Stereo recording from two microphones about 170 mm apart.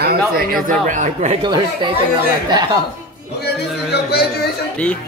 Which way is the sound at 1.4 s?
30° right (ahead or behind).